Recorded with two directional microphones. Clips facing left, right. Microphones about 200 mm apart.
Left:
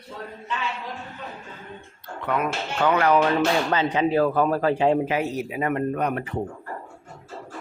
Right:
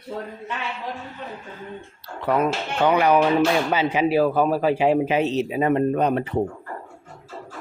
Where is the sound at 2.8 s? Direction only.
15° right (ahead or behind).